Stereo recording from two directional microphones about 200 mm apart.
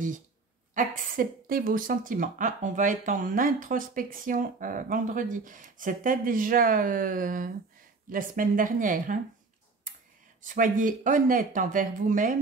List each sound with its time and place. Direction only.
0.7 s speech: 45° right (ahead or behind)
9.9 s tick-tock: 40° right (ahead or behind)
10.4 s speech: 40° right (ahead or behind)